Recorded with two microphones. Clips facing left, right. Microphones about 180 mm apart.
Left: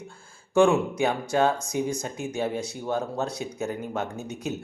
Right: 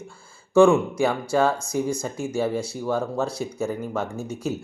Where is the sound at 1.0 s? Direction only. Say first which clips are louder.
Right 2 dB; 20° left (ahead or behind).